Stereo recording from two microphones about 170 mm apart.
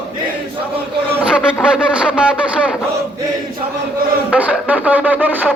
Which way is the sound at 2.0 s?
5° right (ahead or behind).